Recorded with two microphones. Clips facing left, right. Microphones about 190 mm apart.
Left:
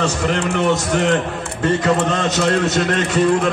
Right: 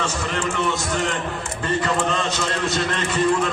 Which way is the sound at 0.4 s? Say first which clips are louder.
Left 4 dB; 60° left (ahead or behind).